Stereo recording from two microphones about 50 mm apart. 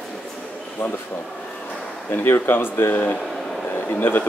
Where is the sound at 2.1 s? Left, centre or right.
Left.